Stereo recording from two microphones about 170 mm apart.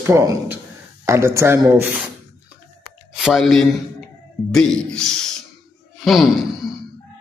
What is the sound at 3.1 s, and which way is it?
Speech, centre (ahead or behind).